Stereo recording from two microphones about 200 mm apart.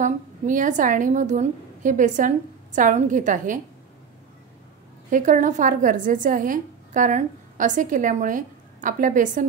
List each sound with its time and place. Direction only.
0.0 s a woman's voice: 40° right (ahead or behind)
5.1 s a woman's voice: 40° right (ahead or behind)